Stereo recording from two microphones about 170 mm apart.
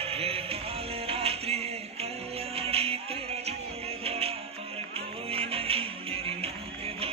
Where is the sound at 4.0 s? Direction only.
35° right (ahead or behind).